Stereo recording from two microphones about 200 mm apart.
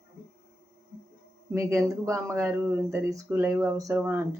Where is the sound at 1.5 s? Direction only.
15° right (ahead or behind).